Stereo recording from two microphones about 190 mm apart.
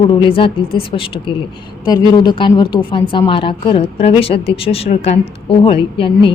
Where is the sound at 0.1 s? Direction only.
25° left (ahead or behind).